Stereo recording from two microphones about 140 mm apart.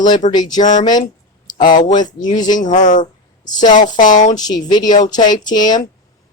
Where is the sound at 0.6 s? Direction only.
65° left (ahead or behind).